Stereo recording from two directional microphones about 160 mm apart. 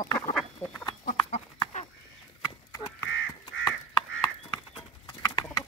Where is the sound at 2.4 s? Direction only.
20° left (ahead or behind).